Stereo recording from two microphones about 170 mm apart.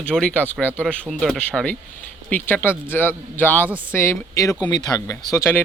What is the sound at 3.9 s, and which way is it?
Speech, 15° left (ahead or behind).